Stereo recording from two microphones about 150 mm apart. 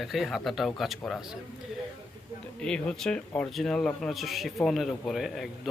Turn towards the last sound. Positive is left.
turn(degrees=0)  # may be behind; listen again after turning